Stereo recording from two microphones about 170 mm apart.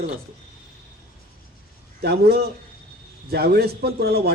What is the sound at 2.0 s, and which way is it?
A man's voice, 70° right (ahead or behind).